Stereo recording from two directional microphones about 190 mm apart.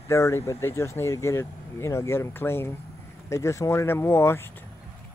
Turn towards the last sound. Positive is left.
turn(degrees=15)  # may be behind; listen again after turning